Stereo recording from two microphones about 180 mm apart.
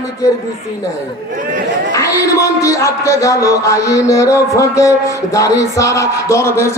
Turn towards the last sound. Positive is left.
turn(degrees=15)  # may be behind; listen again after turning